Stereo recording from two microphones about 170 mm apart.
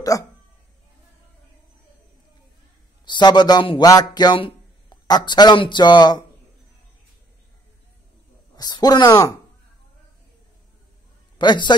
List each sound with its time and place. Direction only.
3.1 s speech: 25° left (ahead or behind)
8.5 s speech: 25° left (ahead or behind)
11.3 s a man's voice: 25° left (ahead or behind)